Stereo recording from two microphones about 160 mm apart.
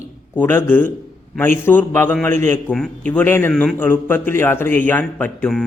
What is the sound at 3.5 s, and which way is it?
A man's voice, 5° left (ahead or behind).